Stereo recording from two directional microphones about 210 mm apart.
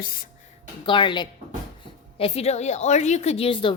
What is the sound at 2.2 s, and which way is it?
A woman's voice, 30° left (ahead or behind).